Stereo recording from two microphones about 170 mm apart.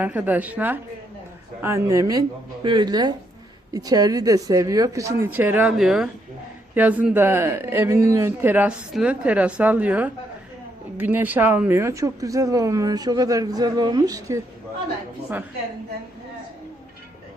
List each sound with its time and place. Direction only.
0.0 s speech: 10° right (ahead or behind)